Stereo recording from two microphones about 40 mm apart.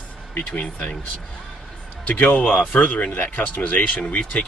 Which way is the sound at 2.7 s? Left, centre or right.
Left.